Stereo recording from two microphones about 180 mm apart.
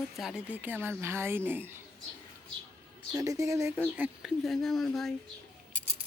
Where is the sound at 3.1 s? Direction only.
20° right (ahead or behind).